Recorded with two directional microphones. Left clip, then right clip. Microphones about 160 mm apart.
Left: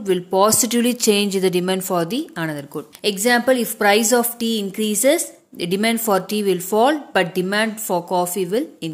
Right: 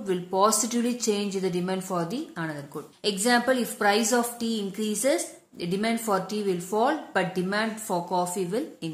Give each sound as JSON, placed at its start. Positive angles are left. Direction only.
{"t": 0.0, "sound": "a woman's voice", "side_deg": 40}